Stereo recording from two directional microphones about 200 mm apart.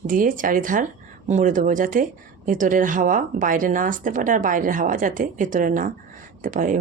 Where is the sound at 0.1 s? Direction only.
40° right (ahead or behind).